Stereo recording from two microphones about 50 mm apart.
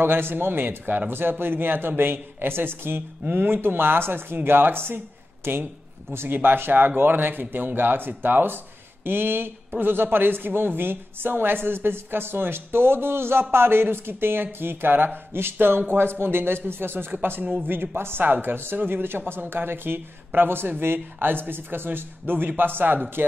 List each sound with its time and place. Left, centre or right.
0.0 s a woman's voice: right
18.2 s a woman's voice: right